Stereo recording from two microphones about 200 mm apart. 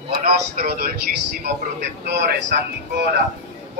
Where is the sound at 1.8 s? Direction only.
55° right (ahead or behind).